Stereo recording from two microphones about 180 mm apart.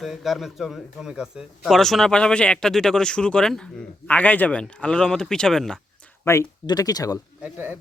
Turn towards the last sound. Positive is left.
turn(degrees=-10)  # may be behind; listen again after turning